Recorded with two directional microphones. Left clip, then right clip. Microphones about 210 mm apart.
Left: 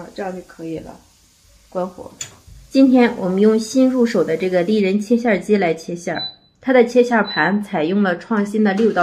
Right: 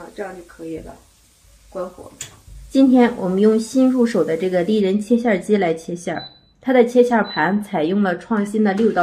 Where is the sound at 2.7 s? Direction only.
5° left (ahead or behind).